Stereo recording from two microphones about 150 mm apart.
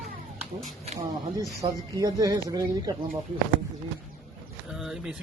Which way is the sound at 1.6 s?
25° right (ahead or behind).